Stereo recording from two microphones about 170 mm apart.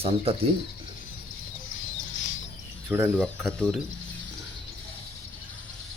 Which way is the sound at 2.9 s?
15° right (ahead or behind).